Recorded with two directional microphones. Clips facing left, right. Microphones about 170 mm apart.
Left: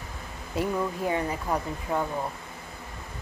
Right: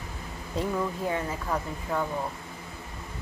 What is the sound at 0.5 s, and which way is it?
Speech, 10° left (ahead or behind).